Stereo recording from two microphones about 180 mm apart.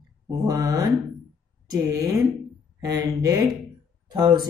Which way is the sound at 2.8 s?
20° right (ahead or behind).